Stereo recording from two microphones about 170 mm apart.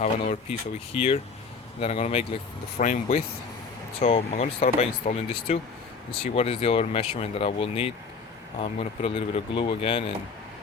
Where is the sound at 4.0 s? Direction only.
35° left (ahead or behind).